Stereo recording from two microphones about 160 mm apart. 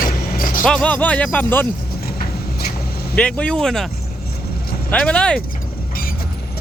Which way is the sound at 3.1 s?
5° left (ahead or behind).